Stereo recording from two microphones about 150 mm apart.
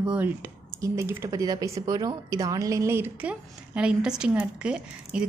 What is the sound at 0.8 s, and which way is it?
A woman's voice, 20° right (ahead or behind).